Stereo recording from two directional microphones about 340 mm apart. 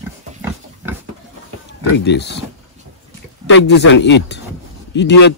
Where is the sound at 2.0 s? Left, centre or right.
Left.